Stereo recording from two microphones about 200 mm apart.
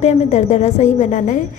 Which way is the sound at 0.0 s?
35° left (ahead or behind).